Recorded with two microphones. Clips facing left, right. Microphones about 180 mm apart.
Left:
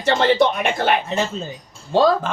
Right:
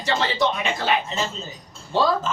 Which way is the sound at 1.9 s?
45° left (ahead or behind).